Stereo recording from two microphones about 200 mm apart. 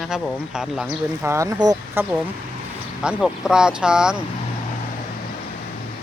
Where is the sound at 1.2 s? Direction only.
15° right (ahead or behind).